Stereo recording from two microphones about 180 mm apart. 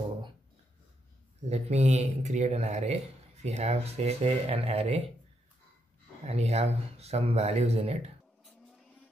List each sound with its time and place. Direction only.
1.5 s speech: 35° right (ahead or behind)
6.2 s speech: 35° right (ahead or behind)